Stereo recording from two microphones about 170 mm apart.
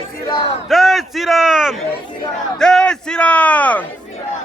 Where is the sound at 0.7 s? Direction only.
Centre (ahead or behind).